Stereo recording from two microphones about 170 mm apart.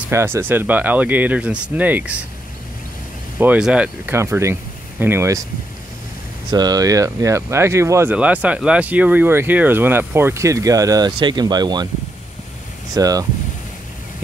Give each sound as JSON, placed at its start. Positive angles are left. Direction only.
{"t": 0.1, "sound": "speech", "side_deg": -15}
{"t": 3.3, "sound": "speech", "side_deg": -5}
{"t": 6.5, "sound": "speech", "side_deg": -20}
{"t": 12.9, "sound": "speech", "side_deg": -20}